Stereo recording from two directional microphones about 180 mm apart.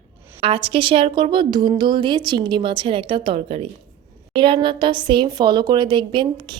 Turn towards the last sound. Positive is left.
turn(degrees=-25)  # may be behind; listen again after turning